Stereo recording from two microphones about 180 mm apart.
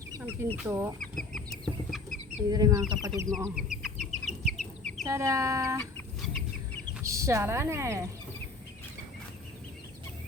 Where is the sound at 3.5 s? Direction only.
5° right (ahead or behind).